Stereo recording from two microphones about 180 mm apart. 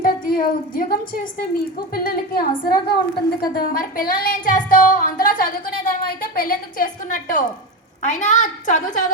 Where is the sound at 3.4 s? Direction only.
55° left (ahead or behind).